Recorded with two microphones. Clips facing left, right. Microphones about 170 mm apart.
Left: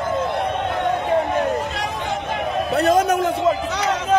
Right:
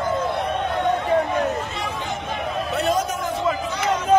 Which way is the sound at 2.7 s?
35° left (ahead or behind).